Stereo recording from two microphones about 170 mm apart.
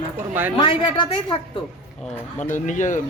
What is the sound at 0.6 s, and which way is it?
Speech, 30° left (ahead or behind).